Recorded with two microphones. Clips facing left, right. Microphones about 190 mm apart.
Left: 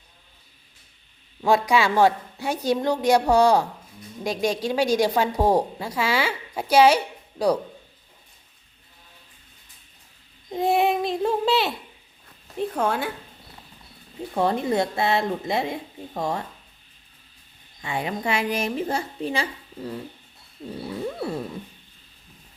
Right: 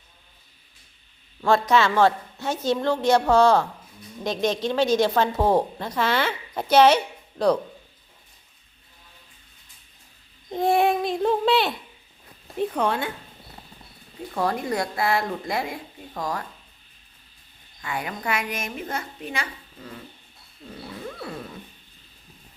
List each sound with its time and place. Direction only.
1.4 s a woman's voice: 15° left (ahead or behind)
10.5 s a sound: centre (ahead or behind)
12.5 s speech: centre (ahead or behind)
14.3 s speech: 25° left (ahead or behind)
17.8 s a woman's voice: 25° left (ahead or behind)